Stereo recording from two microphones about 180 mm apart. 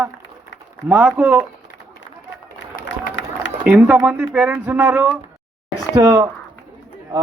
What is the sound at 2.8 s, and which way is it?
Run, 90° left.